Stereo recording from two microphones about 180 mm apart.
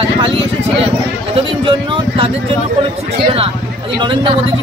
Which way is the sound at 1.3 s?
30° right (ahead or behind).